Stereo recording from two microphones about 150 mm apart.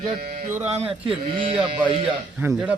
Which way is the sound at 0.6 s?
45° right (ahead or behind).